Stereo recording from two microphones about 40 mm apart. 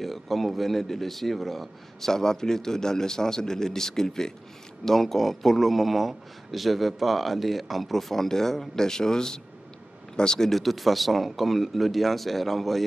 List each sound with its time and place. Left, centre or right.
0.0 s a man's voice: centre
10.5 s a man's voice: centre